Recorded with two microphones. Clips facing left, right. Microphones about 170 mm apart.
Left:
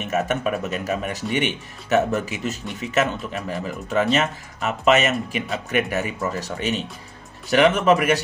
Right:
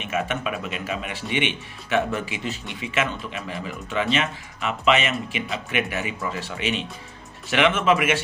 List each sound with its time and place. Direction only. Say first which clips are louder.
0.0 s speech: left 4 dB; 45° left (ahead or behind)